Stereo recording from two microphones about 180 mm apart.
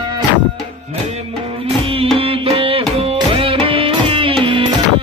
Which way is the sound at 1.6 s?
30° right (ahead or behind).